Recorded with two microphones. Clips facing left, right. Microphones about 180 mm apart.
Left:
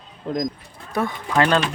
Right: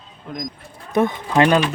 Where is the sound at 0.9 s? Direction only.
20° right (ahead or behind).